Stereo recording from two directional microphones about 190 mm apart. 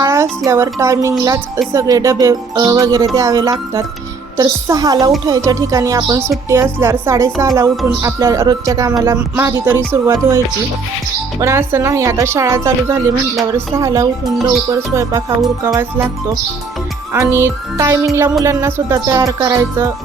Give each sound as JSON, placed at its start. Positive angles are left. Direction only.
{"t": 0.0, "sound": "music", "side_deg": -15}
{"t": 4.4, "sound": "a woman's voice", "side_deg": -20}
{"t": 5.5, "sound": "music", "side_deg": -15}
{"t": 17.1, "sound": "music", "side_deg": -10}